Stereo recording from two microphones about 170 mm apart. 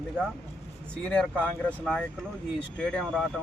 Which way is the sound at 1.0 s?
5° left (ahead or behind).